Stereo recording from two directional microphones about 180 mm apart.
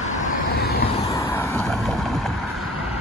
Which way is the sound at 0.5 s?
60° left (ahead or behind).